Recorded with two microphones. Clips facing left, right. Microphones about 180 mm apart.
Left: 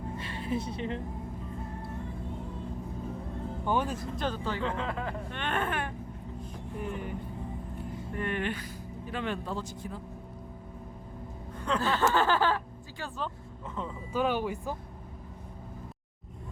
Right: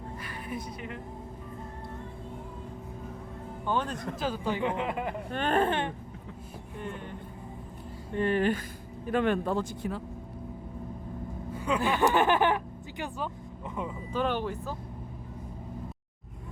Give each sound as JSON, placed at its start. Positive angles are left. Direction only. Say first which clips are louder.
{"t": 0.2, "sound": "a woman's voice", "louder": "left 5 dB", "side_deg": 25}
{"t": 3.7, "sound": "speech", "louder": "left 1 dB", "side_deg": 10}
{"t": 4.2, "sound": "speech", "louder": "right 3 dB", "side_deg": -10}
{"t": 5.3, "sound": "speech", "louder": "right 7 dB", "side_deg": -40}
{"t": 6.7, "sound": "speech", "louder": "left 3 dB", "side_deg": 5}
{"t": 8.1, "sound": "speech", "louder": "right 7 dB", "side_deg": -35}
{"t": 9.0, "sound": "speech", "louder": "right 8 dB", "side_deg": -55}
{"t": 11.5, "sound": "speech", "louder": "right 1 dB", "side_deg": -10}
{"t": 14.1, "sound": "speech", "louder": "left 1 dB", "side_deg": 10}